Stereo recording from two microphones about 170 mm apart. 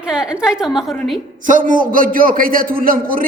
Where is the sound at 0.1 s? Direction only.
5° right (ahead or behind).